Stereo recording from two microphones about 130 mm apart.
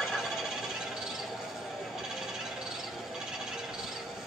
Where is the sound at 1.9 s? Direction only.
5° right (ahead or behind).